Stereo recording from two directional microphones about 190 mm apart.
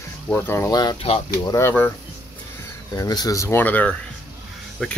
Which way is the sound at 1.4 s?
15° left (ahead or behind).